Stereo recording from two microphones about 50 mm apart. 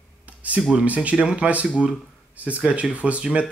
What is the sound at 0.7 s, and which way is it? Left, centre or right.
Speech, right.